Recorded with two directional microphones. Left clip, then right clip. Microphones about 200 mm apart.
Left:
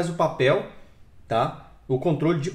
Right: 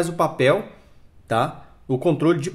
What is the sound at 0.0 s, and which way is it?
Speech, 45° right (ahead or behind).